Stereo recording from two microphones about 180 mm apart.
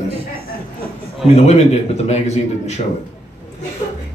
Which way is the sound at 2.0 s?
40° left (ahead or behind).